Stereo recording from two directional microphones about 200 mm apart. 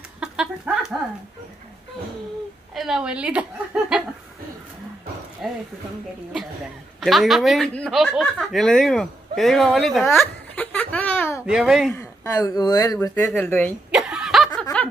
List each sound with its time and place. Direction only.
0.2 s chicken: 5° right (ahead or behind)
2.7 s a woman's voice: centre (ahead or behind)
3.9 s chuckle: 5° right (ahead or behind)
5.4 s a sound: centre (ahead or behind)
7.0 s speech: centre (ahead or behind)
11.4 s a woman's voice: centre (ahead or behind)
11.9 s speech: 15° left (ahead or behind)
13.9 s snicker: centre (ahead or behind)